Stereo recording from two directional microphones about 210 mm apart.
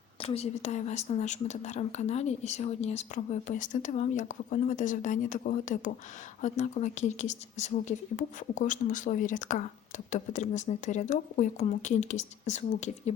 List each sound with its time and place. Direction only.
0.2 s speech: 30° left (ahead or behind)